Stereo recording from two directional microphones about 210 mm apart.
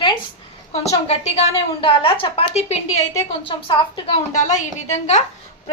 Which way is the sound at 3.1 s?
20° left (ahead or behind).